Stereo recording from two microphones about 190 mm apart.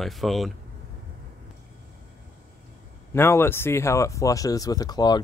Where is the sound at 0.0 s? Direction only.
Centre (ahead or behind).